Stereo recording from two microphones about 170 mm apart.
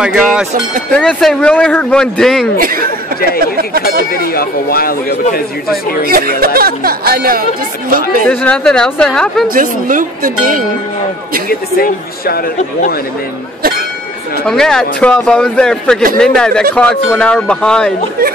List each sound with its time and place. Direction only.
0.0 s a man's voice: 5° right (ahead or behind)
3.3 s speech: 60° right (ahead or behind)
4.1 s speech: 60° left (ahead or behind)
6.0 s speech: 60° right (ahead or behind)
8.3 s a man's voice: 5° left (ahead or behind)
9.5 s a woman's voice: 55° right (ahead or behind)
11.4 s speech: 65° left (ahead or behind)
13.6 s a sound: 65° right (ahead or behind)
14.4 s a man's voice: 5° left (ahead or behind)